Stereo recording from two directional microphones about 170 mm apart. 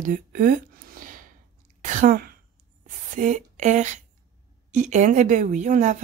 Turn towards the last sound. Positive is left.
turn(degrees=-45)  # may be behind; listen again after turning